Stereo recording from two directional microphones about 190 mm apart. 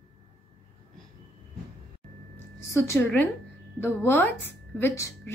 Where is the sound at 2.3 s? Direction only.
15° left (ahead or behind).